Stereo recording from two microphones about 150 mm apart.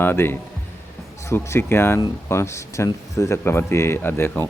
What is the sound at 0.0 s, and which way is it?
Speech, 15° left (ahead or behind).